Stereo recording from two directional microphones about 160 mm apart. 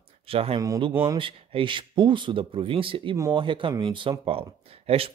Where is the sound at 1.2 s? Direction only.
35° right (ahead or behind).